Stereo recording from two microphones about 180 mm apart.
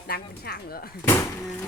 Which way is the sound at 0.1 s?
60° left (ahead or behind).